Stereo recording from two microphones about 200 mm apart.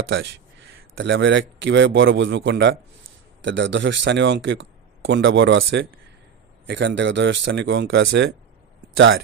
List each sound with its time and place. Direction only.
0.9 s speech: 65° right (ahead or behind)